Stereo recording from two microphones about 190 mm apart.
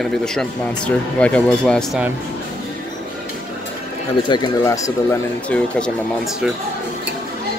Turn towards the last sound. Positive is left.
turn(degrees=0)  # may be behind; listen again after turning